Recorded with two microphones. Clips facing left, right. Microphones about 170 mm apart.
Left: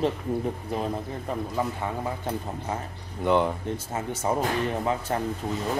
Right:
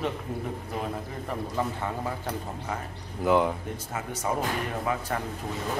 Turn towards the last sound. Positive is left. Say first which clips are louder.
# left 3 dB
turn(degrees=25)  # may be behind; listen again after turning